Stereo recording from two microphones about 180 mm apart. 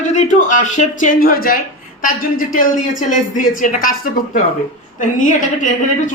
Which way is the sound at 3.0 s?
45° left (ahead or behind).